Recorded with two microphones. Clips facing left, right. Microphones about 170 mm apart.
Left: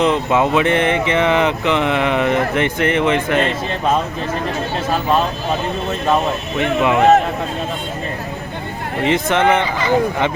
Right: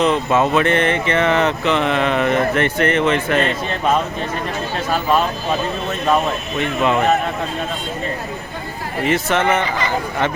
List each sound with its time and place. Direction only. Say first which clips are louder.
0.0 s speech: left 1 dB; 15° left (ahead or behind)
6.6 s speech: left 2 dB; 15° left (ahead or behind)
9.0 s speech: left 2 dB; 15° left (ahead or behind)